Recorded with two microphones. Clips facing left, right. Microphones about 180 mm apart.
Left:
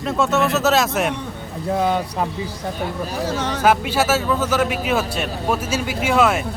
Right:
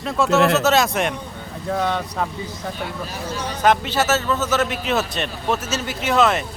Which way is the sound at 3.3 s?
90° left.